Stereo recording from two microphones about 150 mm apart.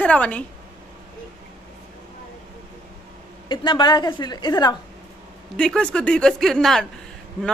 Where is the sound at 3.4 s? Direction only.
30° left (ahead or behind).